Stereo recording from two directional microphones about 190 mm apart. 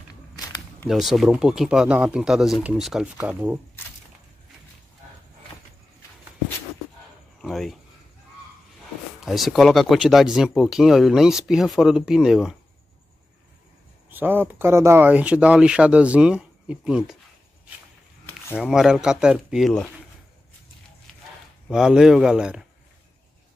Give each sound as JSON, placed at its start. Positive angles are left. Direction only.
{"t": 0.8, "sound": "speech", "side_deg": 0}
{"t": 7.4, "sound": "speech", "side_deg": 0}
{"t": 9.2, "sound": "speech", "side_deg": 0}
{"t": 14.1, "sound": "speech", "side_deg": -10}
{"t": 18.6, "sound": "speech", "side_deg": 0}
{"t": 21.6, "sound": "speech", "side_deg": 0}